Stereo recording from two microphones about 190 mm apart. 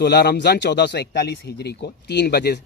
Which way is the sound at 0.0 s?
60° left (ahead or behind).